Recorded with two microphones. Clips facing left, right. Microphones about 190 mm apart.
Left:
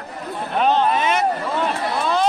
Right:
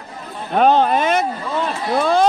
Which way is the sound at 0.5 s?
45° right (ahead or behind).